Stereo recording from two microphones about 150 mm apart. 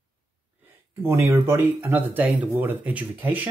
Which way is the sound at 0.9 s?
15° right (ahead or behind).